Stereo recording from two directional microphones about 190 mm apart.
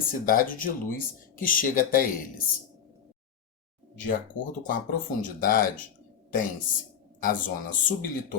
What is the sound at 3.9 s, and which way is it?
Speech, 45° left (ahead or behind).